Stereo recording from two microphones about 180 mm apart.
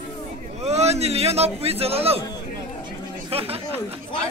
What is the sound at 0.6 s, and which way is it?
A man's voice, 35° right (ahead or behind).